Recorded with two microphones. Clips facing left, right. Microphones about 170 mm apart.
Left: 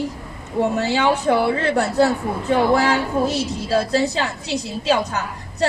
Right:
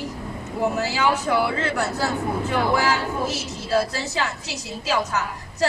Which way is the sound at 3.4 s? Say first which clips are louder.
Left 3 dB; 30° left (ahead or behind).